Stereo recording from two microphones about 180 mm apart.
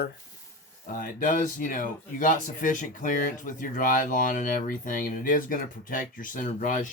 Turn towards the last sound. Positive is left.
turn(degrees=50)  # may be behind; listen again after turning